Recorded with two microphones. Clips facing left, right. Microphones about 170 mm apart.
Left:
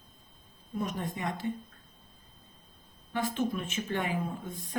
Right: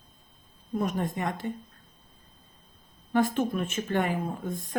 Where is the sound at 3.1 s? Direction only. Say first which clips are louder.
Right 6 dB; 50° right (ahead or behind).